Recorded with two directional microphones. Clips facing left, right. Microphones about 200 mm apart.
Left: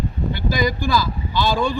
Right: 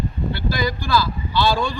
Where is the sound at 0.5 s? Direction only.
15° left (ahead or behind).